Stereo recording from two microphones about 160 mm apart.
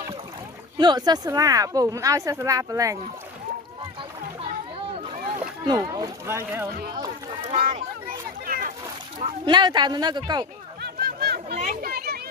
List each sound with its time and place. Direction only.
0.7 s speech: 25° right (ahead or behind)
5.7 s speech: 25° right (ahead or behind)
7.0 s speech: 30° right (ahead or behind)
8.5 s splash: 65° right (ahead or behind)
9.5 s speech: 30° right (ahead or behind)
10.8 s a sound: 80° right